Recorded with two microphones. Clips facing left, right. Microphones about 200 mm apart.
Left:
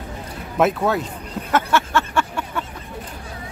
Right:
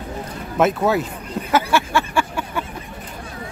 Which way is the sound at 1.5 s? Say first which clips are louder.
Right 1 dB; 10° right (ahead or behind).